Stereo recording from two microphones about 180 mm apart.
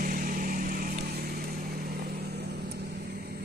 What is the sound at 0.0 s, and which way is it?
Vehicle, 50° right (ahead or behind).